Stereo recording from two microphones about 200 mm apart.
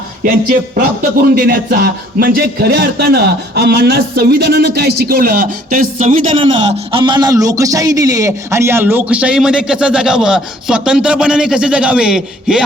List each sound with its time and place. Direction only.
0.2 s speech: 45° right (ahead or behind)
6.4 s a man's voice: 25° right (ahead or behind); by 12.6 s 5° right (ahead or behind)